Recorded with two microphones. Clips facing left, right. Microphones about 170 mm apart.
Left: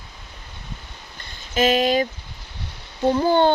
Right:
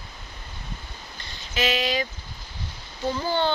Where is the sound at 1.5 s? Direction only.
50° left (ahead or behind).